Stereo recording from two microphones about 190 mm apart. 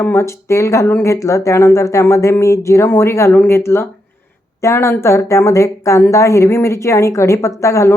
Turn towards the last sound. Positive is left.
turn(degrees=15)  # may be behind; listen again after turning